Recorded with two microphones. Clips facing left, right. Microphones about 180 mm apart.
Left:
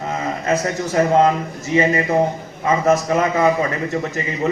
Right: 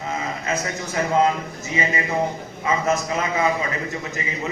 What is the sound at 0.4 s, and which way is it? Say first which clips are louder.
A man's voice: left 6 dB; 40° left (ahead or behind).